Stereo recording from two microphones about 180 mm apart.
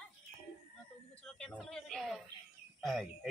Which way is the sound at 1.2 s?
5° left (ahead or behind).